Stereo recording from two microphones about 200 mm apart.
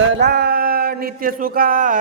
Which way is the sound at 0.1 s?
55° right (ahead or behind).